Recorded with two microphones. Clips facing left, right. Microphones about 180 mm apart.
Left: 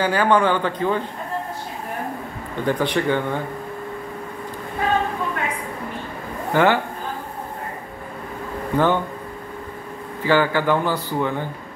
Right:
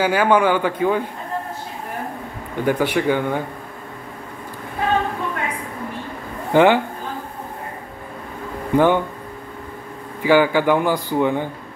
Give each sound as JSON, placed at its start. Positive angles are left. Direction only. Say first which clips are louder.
{"t": 0.0, "sound": "a man's voice", "louder": "right 2 dB", "side_deg": -10}
{"t": 2.6, "sound": "a man's voice", "louder": "right 2 dB", "side_deg": -10}
{"t": 6.5, "sound": "a man's voice", "louder": "right 4 dB", "side_deg": -15}
{"t": 8.7, "sound": "a man's voice", "louder": "right 4 dB", "side_deg": -15}
{"t": 10.2, "sound": "a man's voice", "louder": "right 3 dB", "side_deg": -10}